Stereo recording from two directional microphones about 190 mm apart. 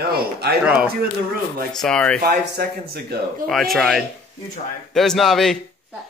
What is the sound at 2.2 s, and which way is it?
Speech, 55° right (ahead or behind).